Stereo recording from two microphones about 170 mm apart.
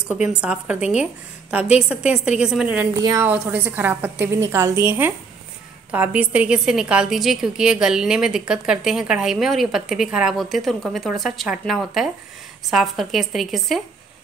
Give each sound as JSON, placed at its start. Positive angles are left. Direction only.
{"t": 0.1, "sound": "a woman's voice", "side_deg": -5}
{"t": 3.0, "sound": "a woman's voice", "side_deg": -20}
{"t": 3.4, "sound": "a woman's voice", "side_deg": -10}